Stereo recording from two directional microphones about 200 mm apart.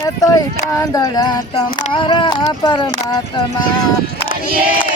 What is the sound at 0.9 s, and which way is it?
Speech, 20° left (ahead or behind).